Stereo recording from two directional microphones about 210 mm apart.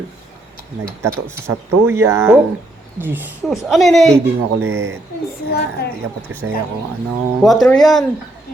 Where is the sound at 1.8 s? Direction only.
10° right (ahead or behind).